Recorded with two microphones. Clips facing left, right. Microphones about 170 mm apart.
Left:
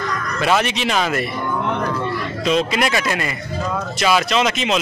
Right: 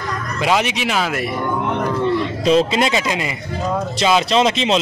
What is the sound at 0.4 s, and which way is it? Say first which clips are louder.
Speech: even; 15° right (ahead or behind).